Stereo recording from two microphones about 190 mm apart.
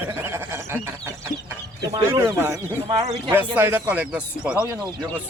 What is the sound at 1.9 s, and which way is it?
Speech, 15° right (ahead or behind).